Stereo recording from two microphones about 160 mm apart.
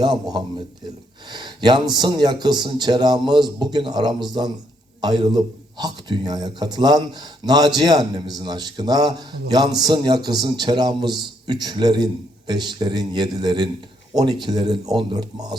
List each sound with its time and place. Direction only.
0.0 s a man's voice: 25° right (ahead or behind)